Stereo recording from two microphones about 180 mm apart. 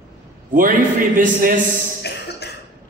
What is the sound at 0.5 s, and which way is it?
Speech, 50° right (ahead or behind).